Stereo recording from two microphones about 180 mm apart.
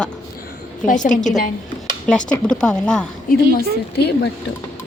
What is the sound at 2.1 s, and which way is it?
A woman's voice, 5° left (ahead or behind).